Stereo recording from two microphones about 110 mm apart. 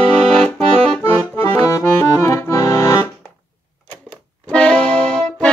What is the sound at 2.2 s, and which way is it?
Accordion, 30° left (ahead or behind).